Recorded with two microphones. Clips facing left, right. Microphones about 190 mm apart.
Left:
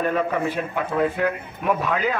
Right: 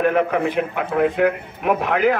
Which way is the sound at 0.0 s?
65° right (ahead or behind).